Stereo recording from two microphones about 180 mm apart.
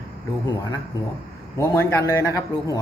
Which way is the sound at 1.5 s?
15° left (ahead or behind).